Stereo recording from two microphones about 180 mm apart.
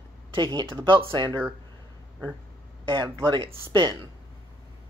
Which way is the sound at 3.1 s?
25° right (ahead or behind).